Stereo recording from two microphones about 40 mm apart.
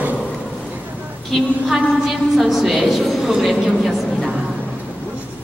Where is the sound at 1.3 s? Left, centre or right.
Centre.